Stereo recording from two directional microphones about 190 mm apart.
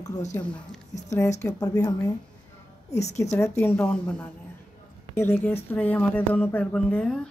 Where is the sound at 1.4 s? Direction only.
15° left (ahead or behind).